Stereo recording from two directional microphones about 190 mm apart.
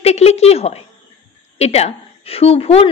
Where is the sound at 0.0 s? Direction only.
35° left (ahead or behind).